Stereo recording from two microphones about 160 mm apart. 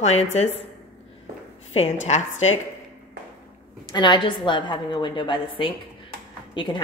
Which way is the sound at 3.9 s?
30° left (ahead or behind).